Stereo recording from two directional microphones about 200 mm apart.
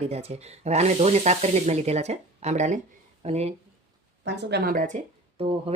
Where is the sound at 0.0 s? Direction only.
30° right (ahead or behind).